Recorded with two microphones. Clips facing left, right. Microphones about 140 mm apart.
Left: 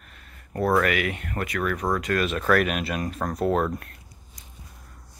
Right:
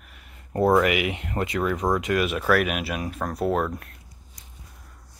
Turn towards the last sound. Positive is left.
turn(degrees=0)  # may be behind; listen again after turning